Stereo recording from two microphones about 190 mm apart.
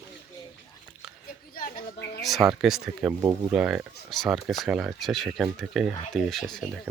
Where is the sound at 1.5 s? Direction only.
50° left (ahead or behind).